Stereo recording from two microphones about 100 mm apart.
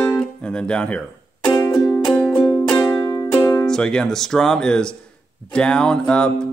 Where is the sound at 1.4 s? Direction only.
40° left (ahead or behind).